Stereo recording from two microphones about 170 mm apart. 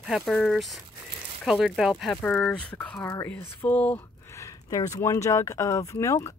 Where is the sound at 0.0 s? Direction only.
Centre (ahead or behind).